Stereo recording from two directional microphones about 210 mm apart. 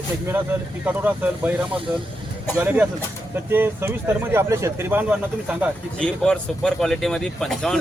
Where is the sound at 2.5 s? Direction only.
10° right (ahead or behind).